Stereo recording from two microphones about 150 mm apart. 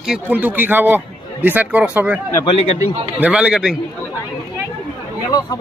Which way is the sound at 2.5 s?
40° left (ahead or behind).